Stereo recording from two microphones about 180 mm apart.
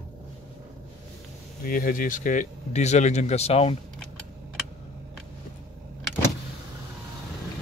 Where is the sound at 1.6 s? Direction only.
50° left (ahead or behind); by 3.7 s 35° left (ahead or behind).